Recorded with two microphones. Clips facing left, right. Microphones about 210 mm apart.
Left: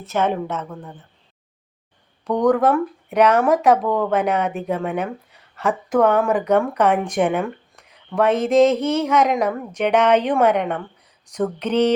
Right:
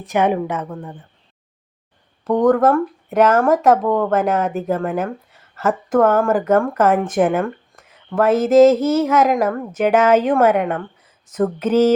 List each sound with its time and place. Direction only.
0.0 s a woman's voice: 15° right (ahead or behind)
2.2 s speech: centre (ahead or behind)